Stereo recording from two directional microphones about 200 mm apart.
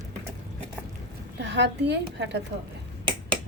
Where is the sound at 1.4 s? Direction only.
60° right (ahead or behind).